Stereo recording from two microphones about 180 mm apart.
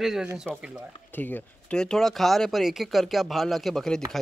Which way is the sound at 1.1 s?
10° left (ahead or behind).